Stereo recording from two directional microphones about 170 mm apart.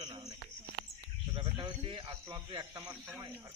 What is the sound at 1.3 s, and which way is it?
Speech, 30° right (ahead or behind).